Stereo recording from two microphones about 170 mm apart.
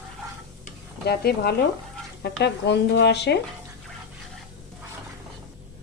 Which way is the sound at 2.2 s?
85° left.